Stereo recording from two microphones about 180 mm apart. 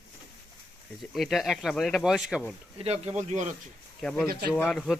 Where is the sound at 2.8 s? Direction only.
35° right (ahead or behind).